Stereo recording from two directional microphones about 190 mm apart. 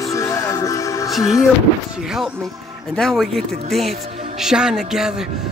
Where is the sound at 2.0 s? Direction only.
Centre (ahead or behind).